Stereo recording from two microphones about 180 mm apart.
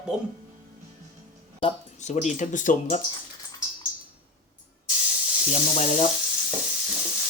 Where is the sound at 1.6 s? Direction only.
35° left (ahead or behind).